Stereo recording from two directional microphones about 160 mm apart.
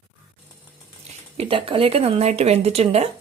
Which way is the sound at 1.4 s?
35° right (ahead or behind).